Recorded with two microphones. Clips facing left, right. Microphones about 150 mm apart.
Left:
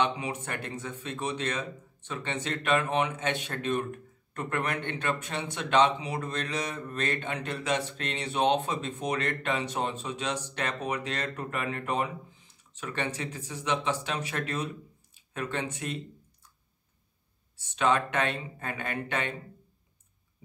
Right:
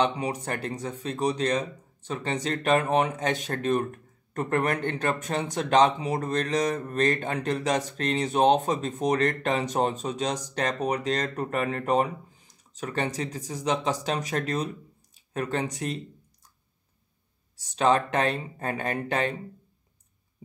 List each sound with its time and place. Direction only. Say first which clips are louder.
0.0 s speech: right 3 dB; 35° right (ahead or behind)
17.6 s speech: right 4 dB; 35° right (ahead or behind)